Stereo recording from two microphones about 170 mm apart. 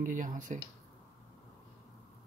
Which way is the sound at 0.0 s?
50° right (ahead or behind).